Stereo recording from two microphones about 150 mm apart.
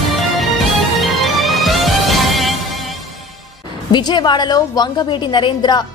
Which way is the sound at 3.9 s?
30° left (ahead or behind).